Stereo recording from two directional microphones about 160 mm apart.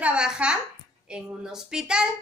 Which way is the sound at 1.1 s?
5° right (ahead or behind).